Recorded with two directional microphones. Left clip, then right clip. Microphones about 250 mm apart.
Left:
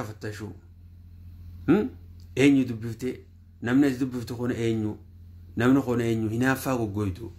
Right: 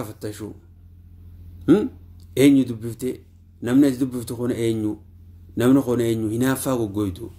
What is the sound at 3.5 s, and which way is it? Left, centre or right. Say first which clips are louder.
Speech: right 5 dB; centre.